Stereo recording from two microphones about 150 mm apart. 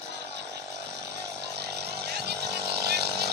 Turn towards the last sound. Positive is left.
turn(degrees=-90)